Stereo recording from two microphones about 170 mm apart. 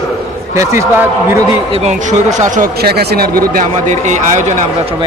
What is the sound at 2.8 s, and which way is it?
A man's voice, 70° right (ahead or behind).